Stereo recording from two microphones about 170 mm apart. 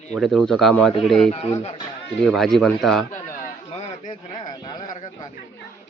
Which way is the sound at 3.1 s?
55° left (ahead or behind).